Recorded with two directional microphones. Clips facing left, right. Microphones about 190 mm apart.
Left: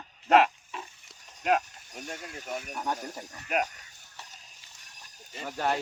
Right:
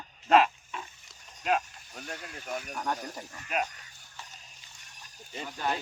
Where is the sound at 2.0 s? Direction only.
20° left (ahead or behind).